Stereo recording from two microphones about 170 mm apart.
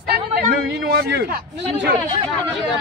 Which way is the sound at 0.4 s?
70° right (ahead or behind).